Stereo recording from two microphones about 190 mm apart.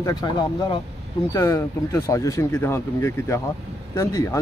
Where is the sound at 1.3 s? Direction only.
15° left (ahead or behind).